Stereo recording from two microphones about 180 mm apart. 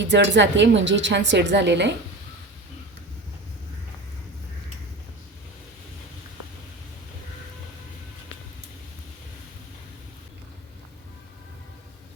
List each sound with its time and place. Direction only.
0.0 s a woman's voice: 80° right